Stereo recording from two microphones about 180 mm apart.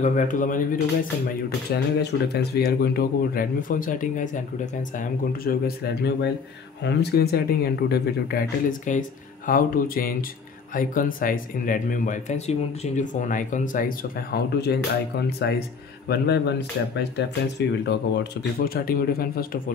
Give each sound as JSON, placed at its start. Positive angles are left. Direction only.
{"t": 0.0, "sound": "speech", "side_deg": 45}
{"t": 1.7, "sound": "speech", "side_deg": 65}
{"t": 6.8, "sound": "speech", "side_deg": 70}